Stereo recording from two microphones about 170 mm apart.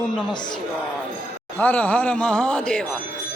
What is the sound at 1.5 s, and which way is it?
Speech, 10° left (ahead or behind).